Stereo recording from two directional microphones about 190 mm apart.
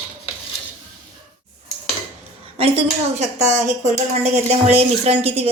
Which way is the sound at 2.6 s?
35° right (ahead or behind).